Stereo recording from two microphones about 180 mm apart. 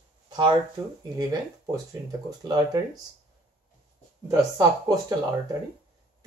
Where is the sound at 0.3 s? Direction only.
25° right (ahead or behind).